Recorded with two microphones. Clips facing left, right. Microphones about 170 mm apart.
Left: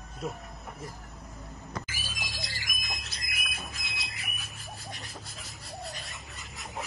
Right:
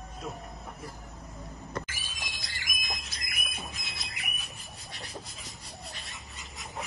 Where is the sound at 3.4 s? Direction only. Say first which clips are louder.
Right 1 dB; centre (ahead or behind).